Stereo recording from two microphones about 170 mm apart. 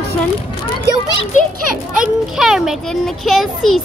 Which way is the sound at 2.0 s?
5° right (ahead or behind).